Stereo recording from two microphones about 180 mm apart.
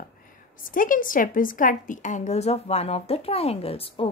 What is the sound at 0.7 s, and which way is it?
A woman's voice, 50° left (ahead or behind).